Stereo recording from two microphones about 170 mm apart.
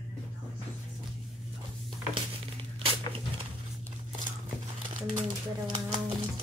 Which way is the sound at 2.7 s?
30° right (ahead or behind).